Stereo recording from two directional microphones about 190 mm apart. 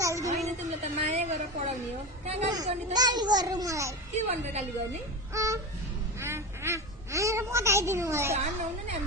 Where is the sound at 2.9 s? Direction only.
20° right (ahead or behind).